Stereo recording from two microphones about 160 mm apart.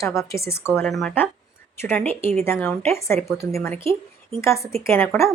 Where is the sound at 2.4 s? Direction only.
10° left (ahead or behind).